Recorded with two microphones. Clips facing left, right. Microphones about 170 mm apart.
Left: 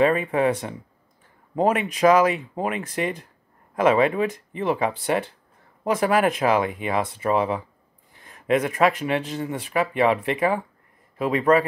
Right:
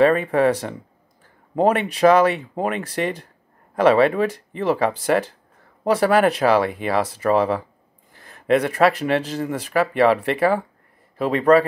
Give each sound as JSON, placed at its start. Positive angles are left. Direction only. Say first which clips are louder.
{"t": 0.0, "sound": "speech", "louder": "right 3 dB", "side_deg": -35}